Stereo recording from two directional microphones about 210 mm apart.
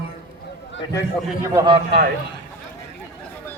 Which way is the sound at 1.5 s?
20° right (ahead or behind).